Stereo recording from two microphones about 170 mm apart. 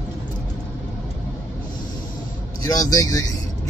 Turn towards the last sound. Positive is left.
turn(degrees=20)  # may be behind; listen again after turning